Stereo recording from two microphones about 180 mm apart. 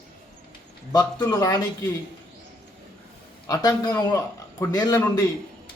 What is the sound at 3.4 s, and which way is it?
A man's voice, 20° left (ahead or behind).